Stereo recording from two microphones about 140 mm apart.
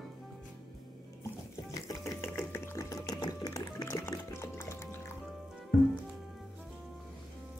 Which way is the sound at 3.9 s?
20° left (ahead or behind).